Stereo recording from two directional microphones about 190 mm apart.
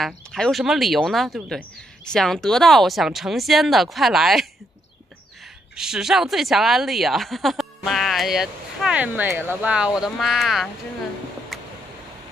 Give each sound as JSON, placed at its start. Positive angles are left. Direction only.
{"t": 0.0, "sound": "speech", "side_deg": 0}
{"t": 5.8, "sound": "speech", "side_deg": -5}
{"t": 11.5, "sound": "a sound", "side_deg": 0}